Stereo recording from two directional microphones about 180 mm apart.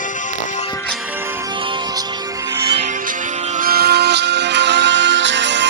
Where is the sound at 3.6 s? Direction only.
60° right (ahead or behind).